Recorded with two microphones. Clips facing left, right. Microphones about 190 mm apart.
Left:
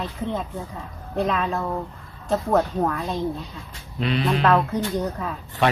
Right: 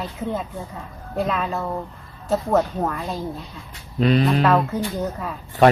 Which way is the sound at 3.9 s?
40° right (ahead or behind).